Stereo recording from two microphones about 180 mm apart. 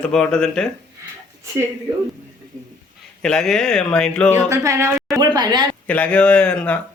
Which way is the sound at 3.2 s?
5° left (ahead or behind).